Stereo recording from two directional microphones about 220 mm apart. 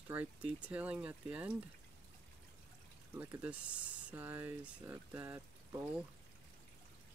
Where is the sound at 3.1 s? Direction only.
5° right (ahead or behind).